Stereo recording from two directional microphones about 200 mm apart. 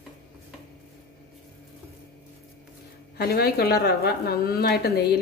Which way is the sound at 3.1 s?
50° left (ahead or behind).